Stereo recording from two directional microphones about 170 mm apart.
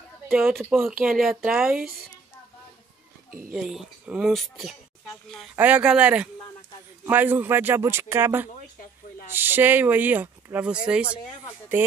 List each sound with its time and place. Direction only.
0.3 s speech: 10° right (ahead or behind)
3.3 s speech: 55° right (ahead or behind)
3.5 s speech: 5° right (ahead or behind)